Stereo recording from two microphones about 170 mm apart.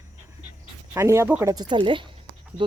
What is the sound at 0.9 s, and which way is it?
Speech, 15° right (ahead or behind).